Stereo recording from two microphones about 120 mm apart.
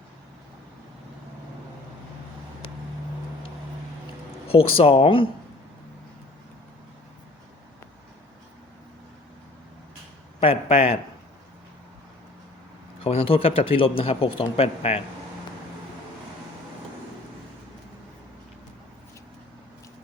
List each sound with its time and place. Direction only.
4.4 s speech: 55° left (ahead or behind)
10.4 s a man's voice: 55° left (ahead or behind)
13.0 s speech: 50° left (ahead or behind)